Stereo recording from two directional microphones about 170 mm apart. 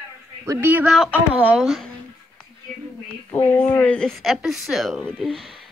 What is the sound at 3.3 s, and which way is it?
Speech, 10° left (ahead or behind).